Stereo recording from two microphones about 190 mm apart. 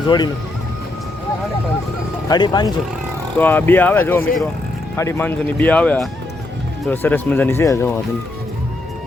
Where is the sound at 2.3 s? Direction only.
20° left (ahead or behind).